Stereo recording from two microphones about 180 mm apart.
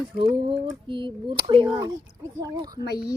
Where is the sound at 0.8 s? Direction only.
30° right (ahead or behind).